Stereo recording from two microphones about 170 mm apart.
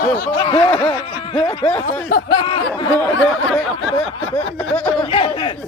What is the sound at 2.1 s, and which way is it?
Speech, 65° left (ahead or behind).